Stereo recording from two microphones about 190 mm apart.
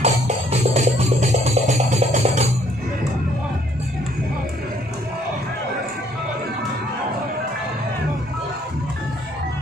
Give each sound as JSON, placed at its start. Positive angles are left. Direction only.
{"t": 0.0, "sound": "music", "side_deg": -35}